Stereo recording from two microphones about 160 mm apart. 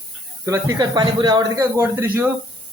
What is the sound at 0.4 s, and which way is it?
Speech, 20° right (ahead or behind).